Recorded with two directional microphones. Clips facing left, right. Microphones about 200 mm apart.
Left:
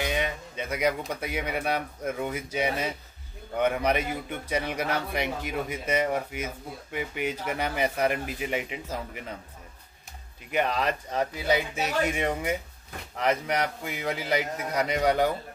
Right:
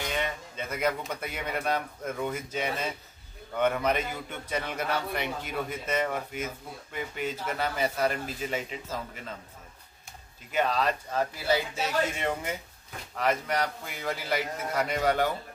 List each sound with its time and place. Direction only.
0.1 s a sound: 15° left (ahead or behind)
1.2 s a man's voice: 10° left (ahead or behind)
10.5 s a man's voice: 15° left (ahead or behind)